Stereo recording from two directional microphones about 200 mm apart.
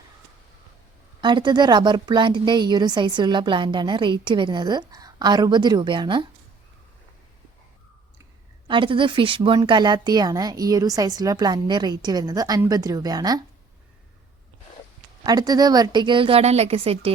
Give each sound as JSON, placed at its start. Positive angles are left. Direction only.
{"t": 1.2, "sound": "a woman's voice", "side_deg": -20}
{"t": 8.6, "sound": "a woman's voice", "side_deg": -25}
{"t": 15.2, "sound": "a woman's voice", "side_deg": -20}